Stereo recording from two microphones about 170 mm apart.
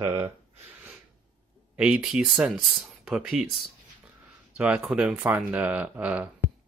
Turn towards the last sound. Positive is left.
turn(degrees=-10)  # may be behind; listen again after turning